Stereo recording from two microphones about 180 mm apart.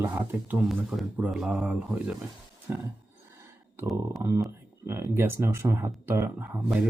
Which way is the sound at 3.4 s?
15° right (ahead or behind).